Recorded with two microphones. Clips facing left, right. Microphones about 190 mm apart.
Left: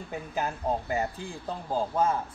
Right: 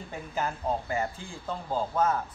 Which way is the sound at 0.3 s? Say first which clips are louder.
Even; 15° left (ahead or behind).